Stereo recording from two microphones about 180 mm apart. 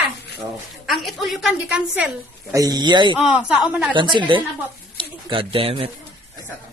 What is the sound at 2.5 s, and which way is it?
Speech, 20° right (ahead or behind).